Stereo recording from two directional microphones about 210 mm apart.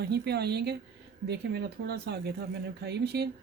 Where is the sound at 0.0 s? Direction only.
50° right (ahead or behind).